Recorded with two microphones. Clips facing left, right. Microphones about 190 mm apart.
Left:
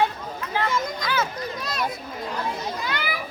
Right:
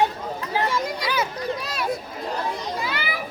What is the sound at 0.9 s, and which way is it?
Children playing, 10° right (ahead or behind).